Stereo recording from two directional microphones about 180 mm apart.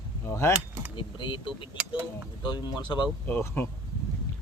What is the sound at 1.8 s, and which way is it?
Speech, 5° right (ahead or behind).